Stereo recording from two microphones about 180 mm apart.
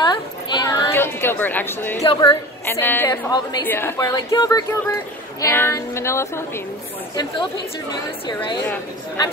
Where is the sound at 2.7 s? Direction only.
10° left (ahead or behind).